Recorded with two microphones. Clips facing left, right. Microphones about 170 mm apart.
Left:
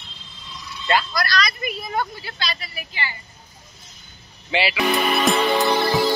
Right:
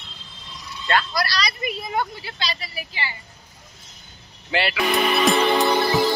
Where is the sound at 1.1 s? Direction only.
30° right (ahead or behind).